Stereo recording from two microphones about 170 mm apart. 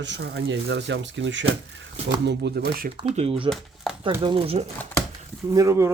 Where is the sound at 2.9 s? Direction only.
35° right (ahead or behind).